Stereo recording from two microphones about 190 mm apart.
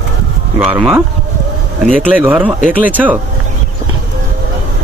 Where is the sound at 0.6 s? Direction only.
5° right (ahead or behind).